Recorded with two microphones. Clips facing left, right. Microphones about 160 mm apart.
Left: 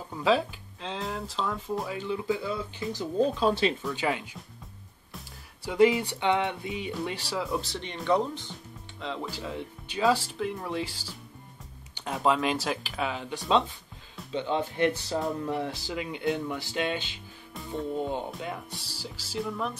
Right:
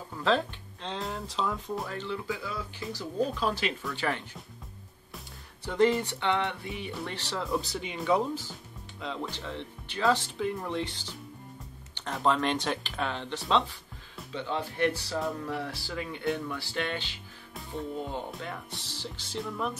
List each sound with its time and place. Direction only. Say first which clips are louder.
0.2 s speech: left 2 dB; 5° left (ahead or behind)
2.0 s speech: left 5 dB; 15° left (ahead or behind)
5.1 s music: even; 10° left (ahead or behind)
9.0 s speech: left 1 dB; centre (ahead or behind)
11.9 s music: left 2 dB; 15° left (ahead or behind)
12.2 s speech: left 1 dB; 5° left (ahead or behind); by 15.5 s 20° left (ahead or behind)
15.6 s music: left 3 dB; 20° left (ahead or behind)
18.8 s speech: even; 5° left (ahead or behind)